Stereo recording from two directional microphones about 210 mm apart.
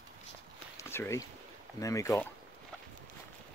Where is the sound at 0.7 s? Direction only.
10° left (ahead or behind).